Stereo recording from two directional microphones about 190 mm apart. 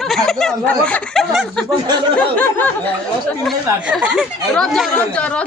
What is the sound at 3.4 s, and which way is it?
Speech, 5° right (ahead or behind).